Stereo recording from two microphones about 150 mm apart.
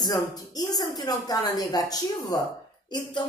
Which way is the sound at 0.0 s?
25° left (ahead or behind).